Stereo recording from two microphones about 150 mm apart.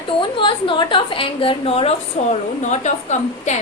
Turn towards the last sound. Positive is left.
turn(degrees=50)  # may be behind; listen again after turning